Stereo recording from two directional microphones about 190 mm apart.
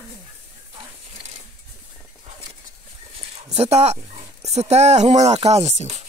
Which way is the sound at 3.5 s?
35° right (ahead or behind).